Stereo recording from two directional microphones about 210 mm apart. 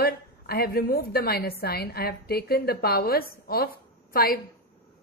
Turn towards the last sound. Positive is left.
turn(degrees=45)  # may be behind; listen again after turning